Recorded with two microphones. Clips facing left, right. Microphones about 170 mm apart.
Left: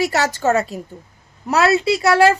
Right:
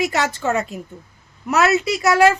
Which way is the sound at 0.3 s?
40° left (ahead or behind).